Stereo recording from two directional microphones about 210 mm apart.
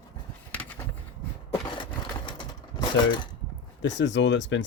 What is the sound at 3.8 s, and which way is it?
Speech, 60° left (ahead or behind).